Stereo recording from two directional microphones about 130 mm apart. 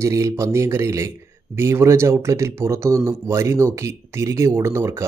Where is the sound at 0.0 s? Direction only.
25° right (ahead or behind).